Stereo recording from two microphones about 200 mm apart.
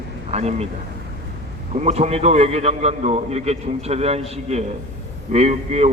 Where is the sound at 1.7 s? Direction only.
35° right (ahead or behind).